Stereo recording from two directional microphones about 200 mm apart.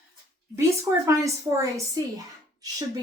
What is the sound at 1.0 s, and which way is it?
A woman's voice, 15° right (ahead or behind).